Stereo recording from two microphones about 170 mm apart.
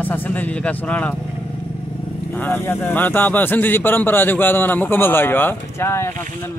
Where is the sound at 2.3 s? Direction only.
10° left (ahead or behind).